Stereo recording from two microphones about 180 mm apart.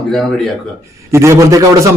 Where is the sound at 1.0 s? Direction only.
15° right (ahead or behind).